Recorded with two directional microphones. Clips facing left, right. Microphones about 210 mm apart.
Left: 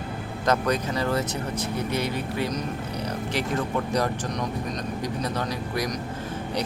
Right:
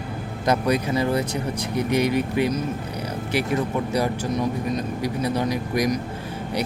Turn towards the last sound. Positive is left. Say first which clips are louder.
# right 6 dB
turn(degrees=-10)  # may be behind; listen again after turning